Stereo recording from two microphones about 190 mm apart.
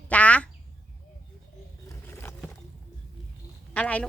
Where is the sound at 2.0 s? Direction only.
10° left (ahead or behind).